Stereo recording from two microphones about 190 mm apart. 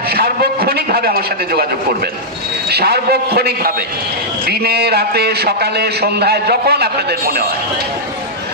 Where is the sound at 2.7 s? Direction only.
55° right (ahead or behind).